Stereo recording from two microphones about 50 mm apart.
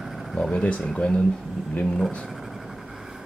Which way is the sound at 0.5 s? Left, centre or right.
Left.